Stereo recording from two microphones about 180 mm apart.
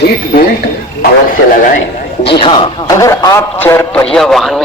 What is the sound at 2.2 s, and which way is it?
Speech, 30° left (ahead or behind).